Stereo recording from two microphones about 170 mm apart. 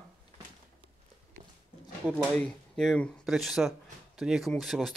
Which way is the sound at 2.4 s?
5° left (ahead or behind).